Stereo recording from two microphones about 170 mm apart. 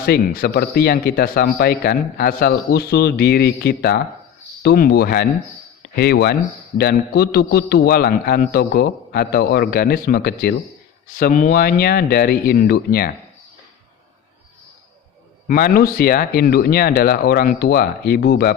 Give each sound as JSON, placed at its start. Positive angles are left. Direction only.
{"t": 0.0, "sound": "speech", "side_deg": 65}
{"t": 11.1, "sound": "speech", "side_deg": 55}
{"t": 15.4, "sound": "speech", "side_deg": 60}